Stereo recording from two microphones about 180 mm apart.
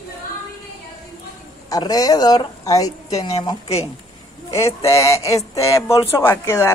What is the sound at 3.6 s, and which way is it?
Speech, 35° left (ahead or behind).